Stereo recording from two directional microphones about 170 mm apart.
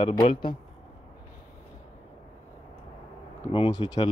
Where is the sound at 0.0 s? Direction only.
30° left (ahead or behind).